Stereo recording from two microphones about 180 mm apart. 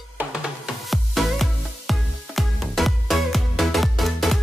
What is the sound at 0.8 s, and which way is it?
Music, centre (ahead or behind).